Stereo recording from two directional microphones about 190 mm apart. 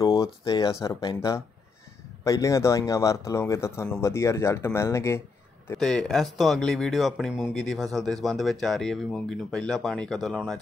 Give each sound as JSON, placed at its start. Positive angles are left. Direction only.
{"t": 0.0, "sound": "speech", "side_deg": 15}
{"t": 5.8, "sound": "speech", "side_deg": 0}